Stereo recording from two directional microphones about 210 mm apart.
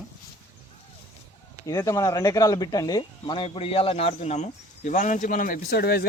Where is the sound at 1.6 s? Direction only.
15° left (ahead or behind).